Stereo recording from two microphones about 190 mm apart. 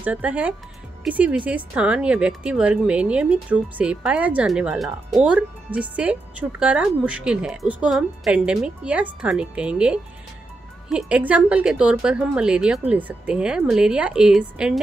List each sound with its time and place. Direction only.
0.0 s a woman's voice: 10° right (ahead or behind)